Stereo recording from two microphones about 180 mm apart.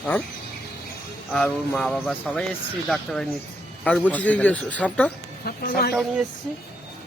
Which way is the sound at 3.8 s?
5° left (ahead or behind).